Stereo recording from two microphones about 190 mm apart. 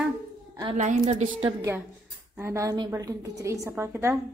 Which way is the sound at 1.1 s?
35° right (ahead or behind).